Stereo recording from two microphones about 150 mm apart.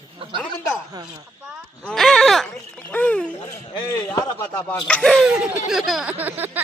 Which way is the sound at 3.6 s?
35° left (ahead or behind).